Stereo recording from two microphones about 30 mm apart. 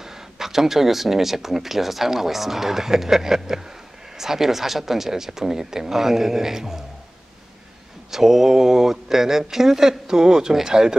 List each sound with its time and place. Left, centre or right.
0.0 s speech: centre
8.1 s speech: centre